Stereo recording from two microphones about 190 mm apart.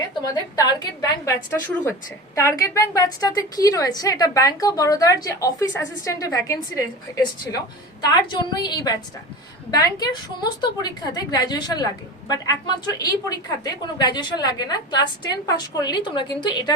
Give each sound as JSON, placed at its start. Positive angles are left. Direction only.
{"t": 0.1, "sound": "a woman's voice", "side_deg": 20}